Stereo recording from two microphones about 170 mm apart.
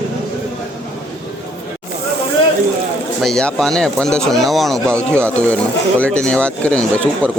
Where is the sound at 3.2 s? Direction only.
5° left (ahead or behind).